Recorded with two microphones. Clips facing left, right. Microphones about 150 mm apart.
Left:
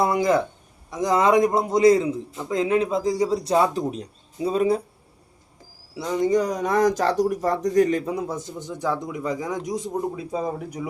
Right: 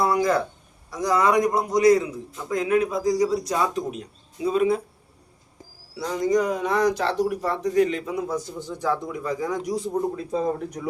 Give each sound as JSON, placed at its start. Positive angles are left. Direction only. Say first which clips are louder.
{"t": 0.0, "sound": "a sound", "louder": "left 1 dB", "side_deg": 20}
{"t": 0.9, "sound": "speech", "louder": "left 2 dB", "side_deg": 25}
{"t": 6.1, "sound": "speech", "louder": "left 1 dB", "side_deg": 25}
{"t": 8.4, "sound": "a man's voice", "louder": "even", "side_deg": 15}
{"t": 9.9, "sound": "a man's voice", "louder": "right 2 dB", "side_deg": 5}